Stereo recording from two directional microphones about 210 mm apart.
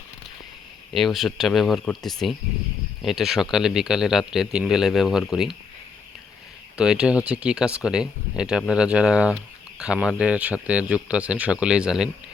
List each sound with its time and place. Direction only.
0.9 s speech: centre (ahead or behind)
6.7 s speech: 5° right (ahead or behind)